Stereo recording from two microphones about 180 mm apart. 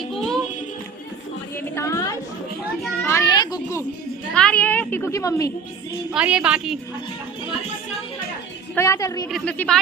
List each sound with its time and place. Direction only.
0.1 s music: centre (ahead or behind)
1.7 s chatter: 15° left (ahead or behind)
3.1 s children playing: 20° left (ahead or behind)
4.4 s a woman's voice: 5° left (ahead or behind)
6.1 s a woman's voice: 5° right (ahead or behind)
8.7 s a woman's voice: 15° left (ahead or behind)
9.3 s a woman's voice: 5° left (ahead or behind)